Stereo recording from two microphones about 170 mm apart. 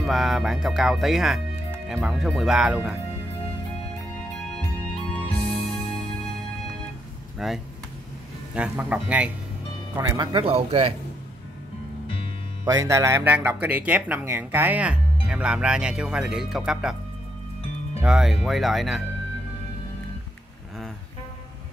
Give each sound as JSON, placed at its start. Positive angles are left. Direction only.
{"t": 0.0, "sound": "speech", "side_deg": 0}
{"t": 5.3, "sound": "music", "side_deg": 35}
{"t": 7.3, "sound": "speech", "side_deg": 0}
{"t": 9.9, "sound": "speech", "side_deg": -20}
{"t": 12.6, "sound": "speech", "side_deg": -20}
{"t": 18.0, "sound": "speech", "side_deg": 0}